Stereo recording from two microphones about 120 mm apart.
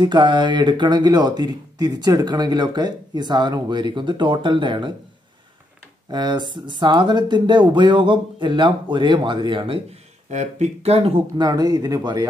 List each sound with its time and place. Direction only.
0.0 s speech: 40° right (ahead or behind)
6.0 s speech: 40° right (ahead or behind)
10.3 s speech: 75° right (ahead or behind); by 11.2 s 55° right (ahead or behind)
11.3 s speech: 30° right (ahead or behind)